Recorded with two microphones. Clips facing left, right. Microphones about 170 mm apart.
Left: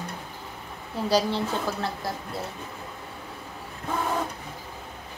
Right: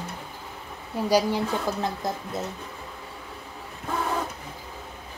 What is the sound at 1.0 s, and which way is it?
A woman's voice, 10° right (ahead or behind).